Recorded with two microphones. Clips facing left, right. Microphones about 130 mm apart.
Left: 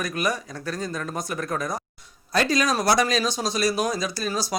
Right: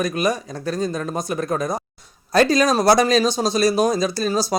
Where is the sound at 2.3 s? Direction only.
35° right (ahead or behind).